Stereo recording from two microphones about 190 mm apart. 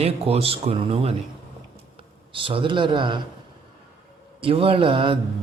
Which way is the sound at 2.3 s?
25° right (ahead or behind).